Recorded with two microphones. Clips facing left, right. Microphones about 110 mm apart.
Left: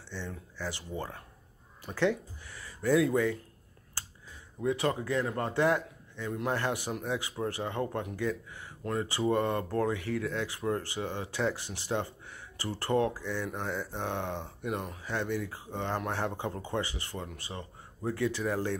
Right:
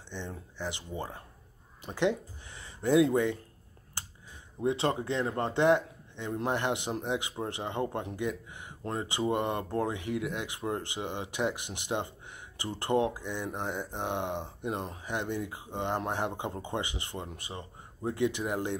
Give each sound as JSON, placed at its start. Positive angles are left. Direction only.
{"t": 0.3, "sound": "a man's voice", "side_deg": -20}
{"t": 4.0, "sound": "finger snapping", "side_deg": -20}
{"t": 4.6, "sound": "a man's voice", "side_deg": -25}